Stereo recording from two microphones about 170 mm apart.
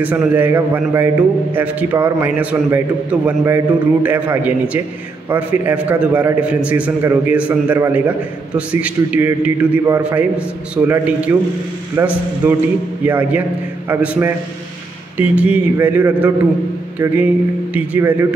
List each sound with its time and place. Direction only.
0.0 s a man's voice: 10° right (ahead or behind)